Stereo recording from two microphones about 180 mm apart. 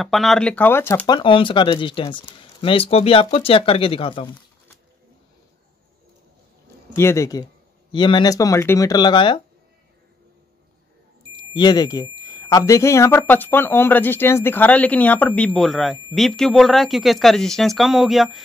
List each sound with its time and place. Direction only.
0.0 s speech: centre (ahead or behind); by 4.3 s 30° left (ahead or behind)
7.0 s speech: 15° left (ahead or behind)
11.3 s speech: 25° left (ahead or behind); by 18.4 s centre (ahead or behind)